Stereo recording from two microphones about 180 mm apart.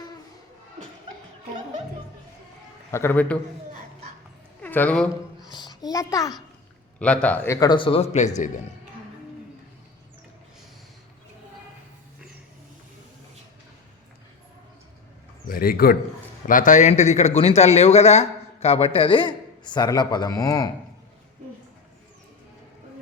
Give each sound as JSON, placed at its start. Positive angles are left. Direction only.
{"t": 2.9, "sound": "a man's voice", "side_deg": 10}
{"t": 4.6, "sound": "a woman's voice", "side_deg": 10}
{"t": 5.5, "sound": "a child's voice", "side_deg": 25}
{"t": 7.0, "sound": "speech", "side_deg": 5}
{"t": 15.4, "sound": "a man's voice", "side_deg": 55}